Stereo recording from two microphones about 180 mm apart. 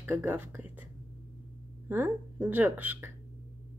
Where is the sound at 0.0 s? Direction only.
15° right (ahead or behind).